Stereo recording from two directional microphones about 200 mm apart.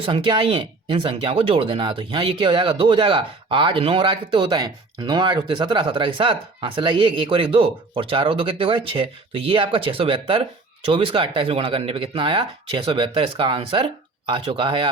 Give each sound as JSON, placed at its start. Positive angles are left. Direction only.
{"t": 0.0, "sound": "speech", "side_deg": -25}